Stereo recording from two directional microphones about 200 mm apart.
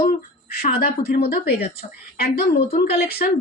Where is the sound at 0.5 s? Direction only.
50° left (ahead or behind).